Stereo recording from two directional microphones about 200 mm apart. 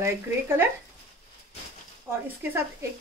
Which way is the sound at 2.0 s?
10° right (ahead or behind).